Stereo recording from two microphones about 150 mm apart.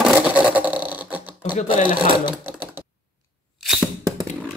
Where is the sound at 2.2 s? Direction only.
30° left (ahead or behind).